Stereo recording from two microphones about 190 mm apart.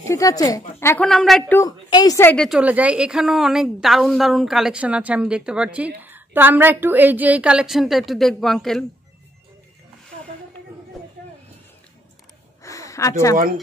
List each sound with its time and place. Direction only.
0.0 s a woman's voice: 15° left (ahead or behind)
1.0 s a woman's voice: centre (ahead or behind)
1.6 s a woman's voice: 20° left (ahead or behind); by 8.8 s centre (ahead or behind)
12.6 s a sound: 15° left (ahead or behind)